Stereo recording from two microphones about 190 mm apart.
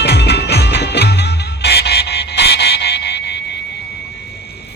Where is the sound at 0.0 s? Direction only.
60° left (ahead or behind).